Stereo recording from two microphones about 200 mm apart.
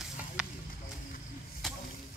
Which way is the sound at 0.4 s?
5° right (ahead or behind).